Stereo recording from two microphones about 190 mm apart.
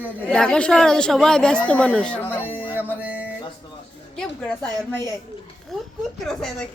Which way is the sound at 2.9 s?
10° right (ahead or behind).